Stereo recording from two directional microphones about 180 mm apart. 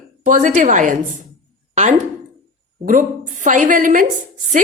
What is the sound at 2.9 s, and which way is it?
A woman's voice, 45° right (ahead or behind).